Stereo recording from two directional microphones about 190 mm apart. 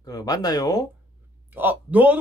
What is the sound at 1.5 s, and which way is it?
Speech, 10° right (ahead or behind).